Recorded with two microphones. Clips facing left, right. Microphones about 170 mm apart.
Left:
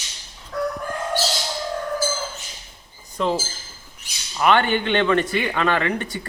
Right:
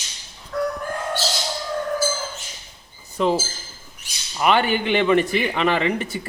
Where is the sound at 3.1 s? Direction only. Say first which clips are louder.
Right 2 dB; 5° right (ahead or behind).